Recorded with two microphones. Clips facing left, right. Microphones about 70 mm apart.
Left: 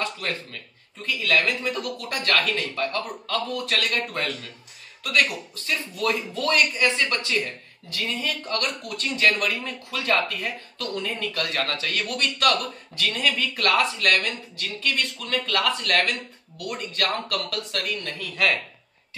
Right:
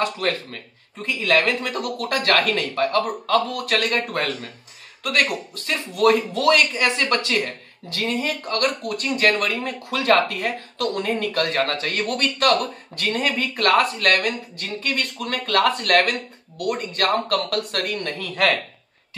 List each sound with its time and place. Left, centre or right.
0.0 s a man's voice: right